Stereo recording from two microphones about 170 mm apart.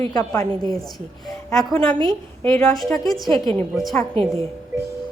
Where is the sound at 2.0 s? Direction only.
30° right (ahead or behind).